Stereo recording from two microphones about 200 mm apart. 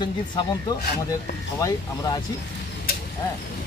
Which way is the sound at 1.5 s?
15° left (ahead or behind).